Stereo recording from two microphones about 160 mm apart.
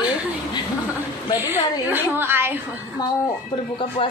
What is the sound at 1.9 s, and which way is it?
Speech, 10° right (ahead or behind).